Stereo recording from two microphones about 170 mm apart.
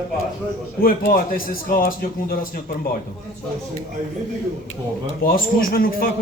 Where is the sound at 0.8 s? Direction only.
60° left (ahead or behind).